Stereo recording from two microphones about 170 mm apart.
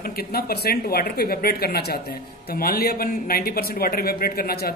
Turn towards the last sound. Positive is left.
turn(degrees=65)  # may be behind; listen again after turning